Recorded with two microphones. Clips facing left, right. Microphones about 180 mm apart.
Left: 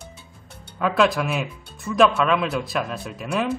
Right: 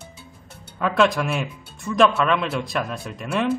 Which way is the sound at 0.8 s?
Centre (ahead or behind).